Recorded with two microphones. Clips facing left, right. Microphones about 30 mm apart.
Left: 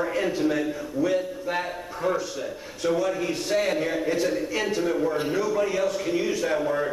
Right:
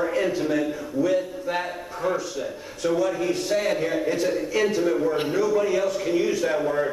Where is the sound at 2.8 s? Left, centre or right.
Centre.